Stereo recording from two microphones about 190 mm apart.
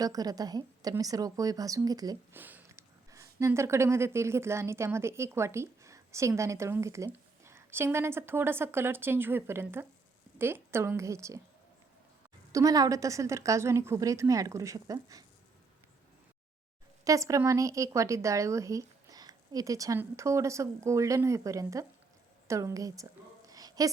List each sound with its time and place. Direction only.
0.0 s a woman's voice: 20° right (ahead or behind)
12.5 s a woman's voice: 20° right (ahead or behind)
17.0 s a woman's voice: 15° right (ahead or behind)
23.5 s a sound: 20° right (ahead or behind)